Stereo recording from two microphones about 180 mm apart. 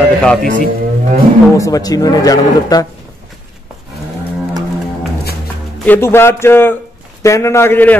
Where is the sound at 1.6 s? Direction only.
20° left (ahead or behind).